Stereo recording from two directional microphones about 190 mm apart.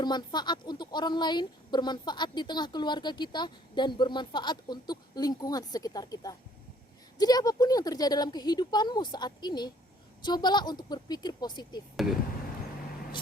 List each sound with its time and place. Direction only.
0.0 s speech: 25° left (ahead or behind)
12.0 s speech: centre (ahead or behind)